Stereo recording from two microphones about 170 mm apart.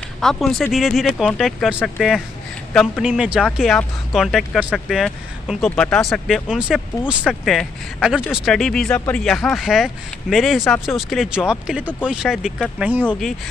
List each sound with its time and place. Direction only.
0.2 s speech: centre (ahead or behind)
13.0 s speech: 10° left (ahead or behind)